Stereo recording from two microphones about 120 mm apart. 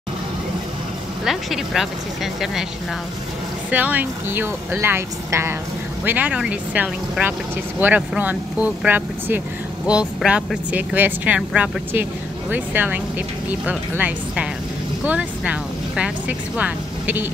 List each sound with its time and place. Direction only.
1.2 s speech: centre (ahead or behind)
3.7 s speech: 15° right (ahead or behind)